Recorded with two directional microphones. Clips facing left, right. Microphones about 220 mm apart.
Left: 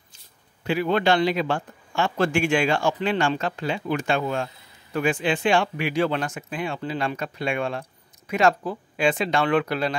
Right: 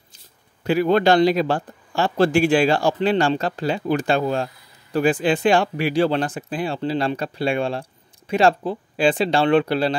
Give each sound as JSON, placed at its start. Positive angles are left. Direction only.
{"t": 0.7, "sound": "speech", "side_deg": -40}